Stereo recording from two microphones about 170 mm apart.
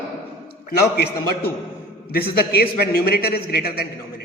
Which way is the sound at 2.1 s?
65° left (ahead or behind).